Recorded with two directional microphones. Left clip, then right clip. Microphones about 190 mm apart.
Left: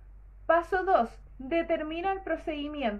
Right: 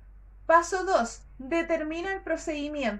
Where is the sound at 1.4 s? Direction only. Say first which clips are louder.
Right 1 dB; 30° right (ahead or behind).